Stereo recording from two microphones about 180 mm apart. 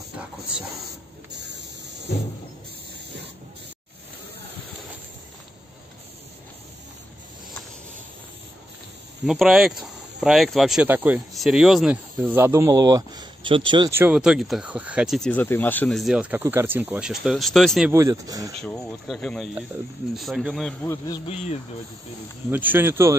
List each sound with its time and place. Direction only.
1.3 s spray: 75° right (ahead or behind)
9.2 s speech: centre (ahead or behind); by 13.8 s 25° right (ahead or behind)
13.8 s speech: 10° right (ahead or behind)
17.9 s speech: 15° right (ahead or behind)
18.6 s speech: 5° left (ahead or behind)
20.8 s speech: 15° left (ahead or behind)
22.5 s speech: 10° right (ahead or behind)